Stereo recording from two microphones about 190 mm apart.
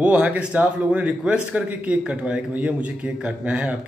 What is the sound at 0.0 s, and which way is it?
A man's voice, 5° right (ahead or behind).